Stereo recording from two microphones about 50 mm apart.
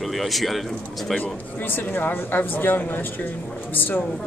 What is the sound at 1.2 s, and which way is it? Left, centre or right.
Speech, left.